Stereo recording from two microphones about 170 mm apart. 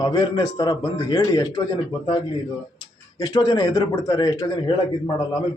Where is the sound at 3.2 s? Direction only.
20° left (ahead or behind).